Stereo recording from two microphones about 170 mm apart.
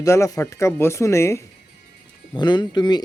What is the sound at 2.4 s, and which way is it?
Speech, 25° left (ahead or behind).